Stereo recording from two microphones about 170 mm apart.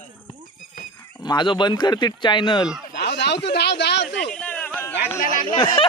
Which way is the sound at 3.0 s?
80° left.